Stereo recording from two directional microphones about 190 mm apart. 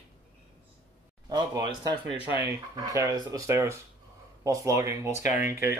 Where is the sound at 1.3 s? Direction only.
20° right (ahead or behind).